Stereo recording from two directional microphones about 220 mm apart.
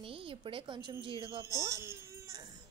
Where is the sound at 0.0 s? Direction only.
25° right (ahead or behind).